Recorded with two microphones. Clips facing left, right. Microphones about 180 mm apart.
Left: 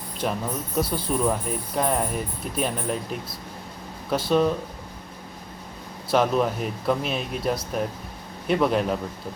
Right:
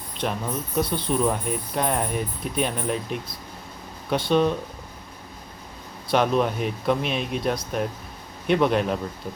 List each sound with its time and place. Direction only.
0.2 s speech: centre (ahead or behind)
6.1 s speech: 5° left (ahead or behind)